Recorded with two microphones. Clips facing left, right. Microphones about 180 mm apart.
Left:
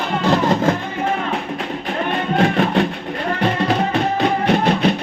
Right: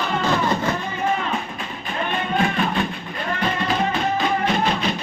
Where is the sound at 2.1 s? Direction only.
70° left (ahead or behind).